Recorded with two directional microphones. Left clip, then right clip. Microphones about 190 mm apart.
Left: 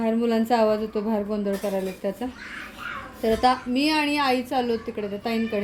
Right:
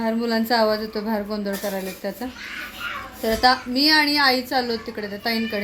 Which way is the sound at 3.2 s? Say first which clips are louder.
Right 2 dB; 10° left (ahead or behind).